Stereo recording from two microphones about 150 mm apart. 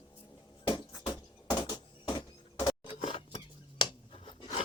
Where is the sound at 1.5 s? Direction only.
30° left (ahead or behind).